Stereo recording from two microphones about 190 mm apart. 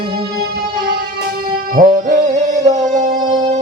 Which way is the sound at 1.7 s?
40° right (ahead or behind).